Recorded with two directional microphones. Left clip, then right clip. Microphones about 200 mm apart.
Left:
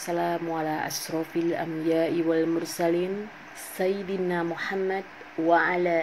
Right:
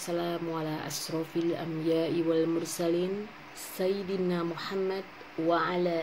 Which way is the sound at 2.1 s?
5° right (ahead or behind).